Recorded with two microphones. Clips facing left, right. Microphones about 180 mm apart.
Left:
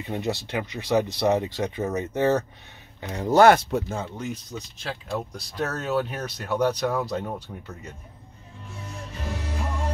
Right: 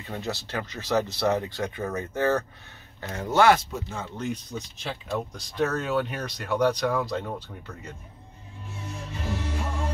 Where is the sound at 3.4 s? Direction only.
60° left (ahead or behind).